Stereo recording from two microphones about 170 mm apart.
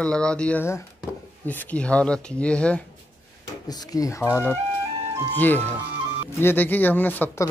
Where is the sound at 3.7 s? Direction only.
20° left (ahead or behind).